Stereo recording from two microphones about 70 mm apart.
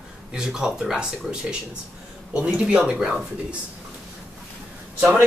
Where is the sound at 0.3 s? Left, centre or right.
Centre.